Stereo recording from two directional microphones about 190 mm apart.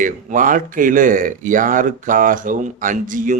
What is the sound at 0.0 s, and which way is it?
Speech, 45° right (ahead or behind).